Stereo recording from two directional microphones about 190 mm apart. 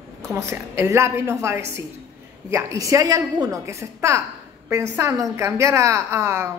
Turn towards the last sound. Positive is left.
turn(degrees=-15)  # may be behind; listen again after turning